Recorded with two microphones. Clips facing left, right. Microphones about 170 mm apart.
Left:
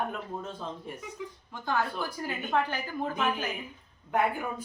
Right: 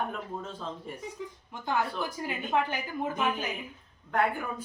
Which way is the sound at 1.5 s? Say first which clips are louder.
Even; 20° right (ahead or behind).